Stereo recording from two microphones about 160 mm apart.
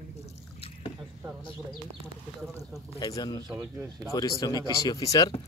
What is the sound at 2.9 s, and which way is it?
Bird, 25° left (ahead or behind).